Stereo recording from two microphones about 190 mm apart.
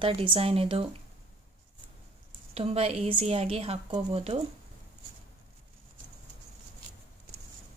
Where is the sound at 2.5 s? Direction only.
30° right (ahead or behind).